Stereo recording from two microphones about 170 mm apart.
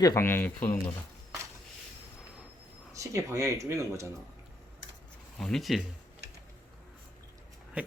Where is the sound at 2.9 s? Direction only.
20° right (ahead or behind).